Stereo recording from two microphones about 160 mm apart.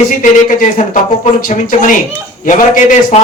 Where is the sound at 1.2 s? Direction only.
60° left (ahead or behind).